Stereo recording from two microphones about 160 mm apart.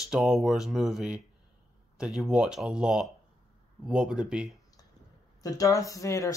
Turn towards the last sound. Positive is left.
turn(degrees=20)  # may be behind; listen again after turning